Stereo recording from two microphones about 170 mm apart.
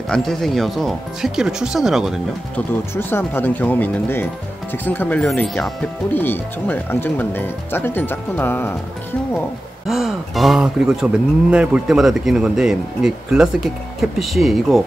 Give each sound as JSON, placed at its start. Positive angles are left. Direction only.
{"t": 0.1, "sound": "speech", "side_deg": 0}
{"t": 2.5, "sound": "speech", "side_deg": 10}
{"t": 9.8, "sound": "speech", "side_deg": 0}